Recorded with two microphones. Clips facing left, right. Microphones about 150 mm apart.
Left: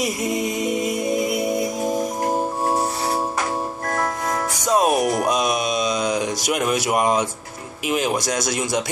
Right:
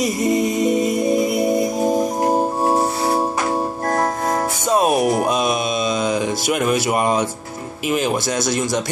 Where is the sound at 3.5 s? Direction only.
35° right (ahead or behind).